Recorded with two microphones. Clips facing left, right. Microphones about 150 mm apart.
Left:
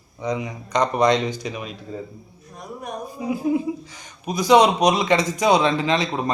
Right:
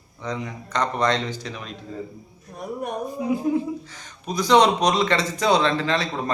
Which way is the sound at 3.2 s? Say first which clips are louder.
Left 1 dB; centre (ahead or behind).